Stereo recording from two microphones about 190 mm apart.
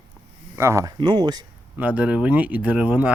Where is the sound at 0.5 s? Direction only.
15° right (ahead or behind).